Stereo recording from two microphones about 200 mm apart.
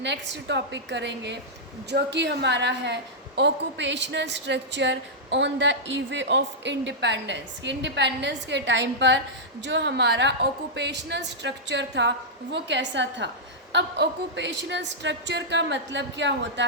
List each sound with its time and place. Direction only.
0.0 s a woman's voice: 65° right (ahead or behind)